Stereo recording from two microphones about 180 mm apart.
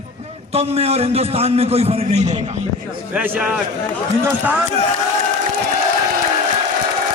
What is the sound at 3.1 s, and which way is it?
Speech, 5° right (ahead or behind).